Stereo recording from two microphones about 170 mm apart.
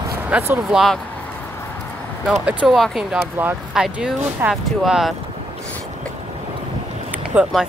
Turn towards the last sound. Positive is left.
turn(degrees=-5)  # may be behind; listen again after turning